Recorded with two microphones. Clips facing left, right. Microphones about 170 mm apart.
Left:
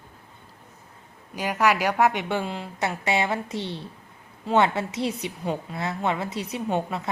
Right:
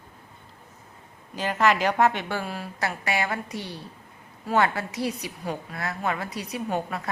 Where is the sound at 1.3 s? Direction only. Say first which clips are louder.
Even; 10° left (ahead or behind).